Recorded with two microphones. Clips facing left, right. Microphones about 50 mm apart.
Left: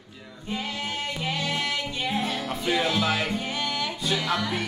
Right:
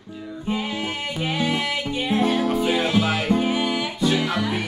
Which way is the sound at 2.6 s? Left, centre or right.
Centre.